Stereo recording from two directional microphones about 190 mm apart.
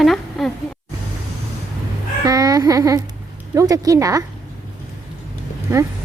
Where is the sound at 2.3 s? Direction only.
20° right (ahead or behind).